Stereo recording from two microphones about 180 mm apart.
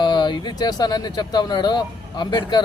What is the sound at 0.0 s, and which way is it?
Speech, 25° left (ahead or behind).